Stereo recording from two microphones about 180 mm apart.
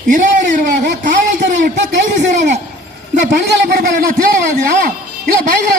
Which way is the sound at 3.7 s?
50° right (ahead or behind).